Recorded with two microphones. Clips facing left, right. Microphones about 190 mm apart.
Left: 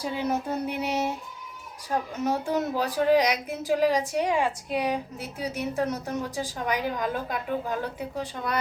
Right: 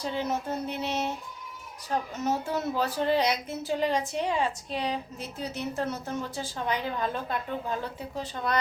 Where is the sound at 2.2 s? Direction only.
15° left (ahead or behind).